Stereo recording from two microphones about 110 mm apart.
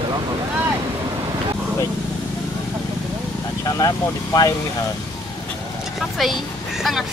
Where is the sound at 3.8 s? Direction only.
30° left (ahead or behind).